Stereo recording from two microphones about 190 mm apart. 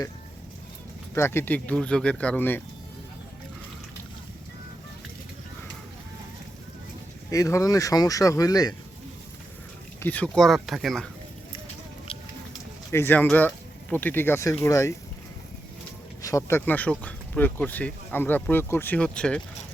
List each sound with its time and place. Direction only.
1.1 s speech: 15° left (ahead or behind)
7.3 s speech: 15° left (ahead or behind)
10.0 s speech: 10° left (ahead or behind)
12.9 s speech: 10° left (ahead or behind)
16.2 s speech: 15° left (ahead or behind)